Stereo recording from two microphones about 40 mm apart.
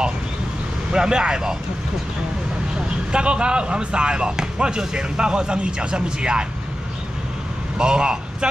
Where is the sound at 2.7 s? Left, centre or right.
Right.